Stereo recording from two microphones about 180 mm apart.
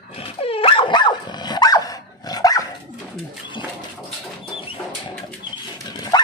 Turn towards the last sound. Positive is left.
turn(degrees=20)  # may be behind; listen again after turning